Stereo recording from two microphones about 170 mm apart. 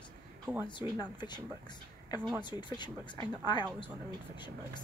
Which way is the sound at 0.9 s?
25° left (ahead or behind).